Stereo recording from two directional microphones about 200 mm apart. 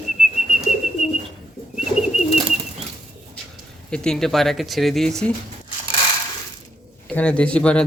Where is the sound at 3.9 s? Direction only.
5° left (ahead or behind).